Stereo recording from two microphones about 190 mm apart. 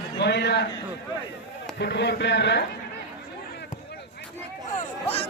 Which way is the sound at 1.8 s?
60° left (ahead or behind).